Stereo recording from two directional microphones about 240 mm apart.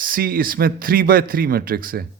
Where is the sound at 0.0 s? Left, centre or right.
Right.